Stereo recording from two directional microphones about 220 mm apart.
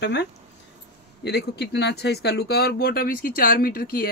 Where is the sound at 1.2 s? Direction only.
50° left (ahead or behind).